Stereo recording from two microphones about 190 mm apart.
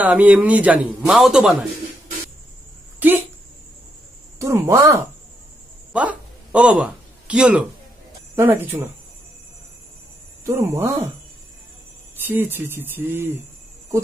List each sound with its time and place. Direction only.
0.0 s a man's voice: 5° right (ahead or behind)
3.0 s speech: 10° right (ahead or behind)
4.4 s a man's voice: 15° right (ahead or behind)
5.9 s a sound: 5° right (ahead or behind)
8.4 s a man's voice: 10° right (ahead or behind)
10.4 s a man's voice: 15° right (ahead or behind)
12.3 s a man's voice: 10° right (ahead or behind)